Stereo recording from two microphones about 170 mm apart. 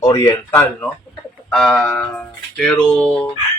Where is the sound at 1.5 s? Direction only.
5° left (ahead or behind).